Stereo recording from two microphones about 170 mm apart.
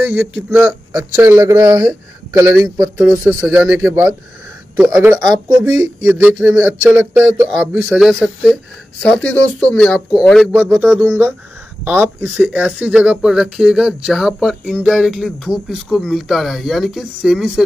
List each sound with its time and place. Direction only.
0.0 s speech: 10° right (ahead or behind)
1.6 s speech: 25° right (ahead or behind)
2.3 s speech: 15° right (ahead or behind); by 10.8 s 5° left (ahead or behind)
10.8 s speech: 10° right (ahead or behind)